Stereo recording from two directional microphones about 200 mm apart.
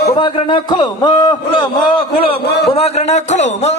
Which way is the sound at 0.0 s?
20° left (ahead or behind).